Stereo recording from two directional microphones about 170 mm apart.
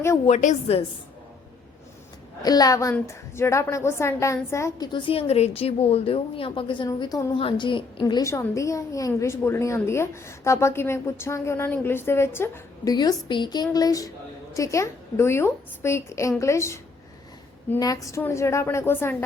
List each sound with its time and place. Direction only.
0.3 s a woman's voice: 40° left (ahead or behind)
2.4 s a woman's voice: 20° left (ahead or behind)